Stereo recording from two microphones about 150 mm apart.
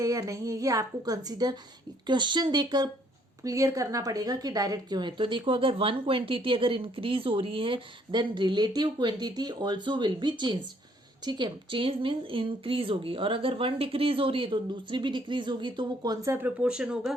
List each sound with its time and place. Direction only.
0.0 s a woman's voice: 20° right (ahead or behind); by 17.2 s 5° right (ahead or behind)